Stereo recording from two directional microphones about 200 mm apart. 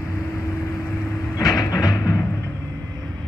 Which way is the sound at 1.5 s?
15° left (ahead or behind).